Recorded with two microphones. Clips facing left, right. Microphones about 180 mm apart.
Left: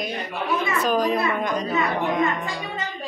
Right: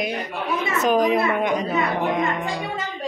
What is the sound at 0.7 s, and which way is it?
Speech, 20° right (ahead or behind).